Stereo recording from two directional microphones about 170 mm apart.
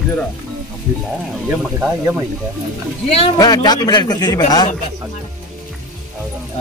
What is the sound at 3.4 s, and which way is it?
A man's voice, 25° left (ahead or behind).